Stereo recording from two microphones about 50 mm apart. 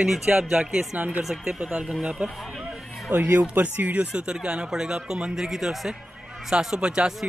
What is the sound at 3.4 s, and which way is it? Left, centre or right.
Speech, right.